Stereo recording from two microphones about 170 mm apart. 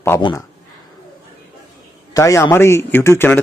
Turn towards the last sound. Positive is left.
turn(degrees=15)  # may be behind; listen again after turning